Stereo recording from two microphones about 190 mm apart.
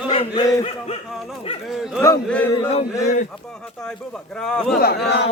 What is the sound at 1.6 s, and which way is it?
Bow-wow, 5° right (ahead or behind).